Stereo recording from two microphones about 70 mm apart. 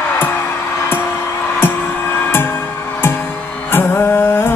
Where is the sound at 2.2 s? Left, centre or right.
Left.